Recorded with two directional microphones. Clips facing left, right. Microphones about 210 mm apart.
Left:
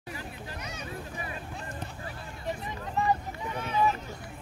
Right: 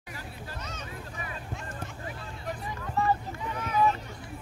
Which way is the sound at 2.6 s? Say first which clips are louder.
Right 2 dB; 20° left (ahead or behind).